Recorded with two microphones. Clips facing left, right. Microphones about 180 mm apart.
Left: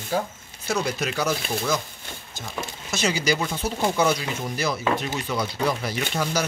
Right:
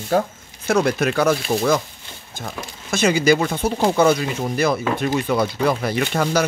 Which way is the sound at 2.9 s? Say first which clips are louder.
Right 8 dB; 55° right (ahead or behind).